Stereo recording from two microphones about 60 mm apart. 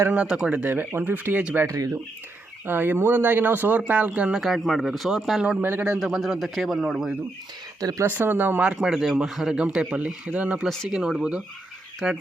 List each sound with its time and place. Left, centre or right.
0.1 s speech: centre
0.6 s speech: right
1.6 s speech: right
2.6 s speech: right
4.3 s speech: centre
5.5 s speech: right
6.0 s speech: centre
7.8 s speech: right
8.0 s speech: right
8.9 s speech: centre
10.8 s speech: centre